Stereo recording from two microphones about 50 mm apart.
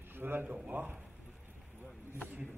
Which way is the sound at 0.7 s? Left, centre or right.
Right.